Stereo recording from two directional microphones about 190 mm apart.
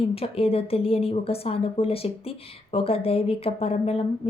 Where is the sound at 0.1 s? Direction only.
30° left (ahead or behind).